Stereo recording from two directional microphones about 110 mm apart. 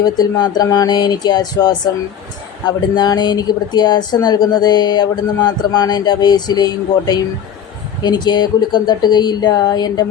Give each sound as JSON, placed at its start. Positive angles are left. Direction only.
{"t": 0.0, "sound": "a woman's voice", "side_deg": 35}